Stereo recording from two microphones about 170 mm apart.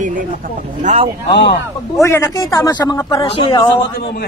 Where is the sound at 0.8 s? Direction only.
35° right (ahead or behind).